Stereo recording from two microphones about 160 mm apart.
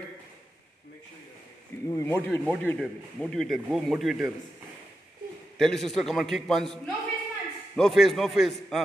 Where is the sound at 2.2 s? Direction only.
10° left (ahead or behind).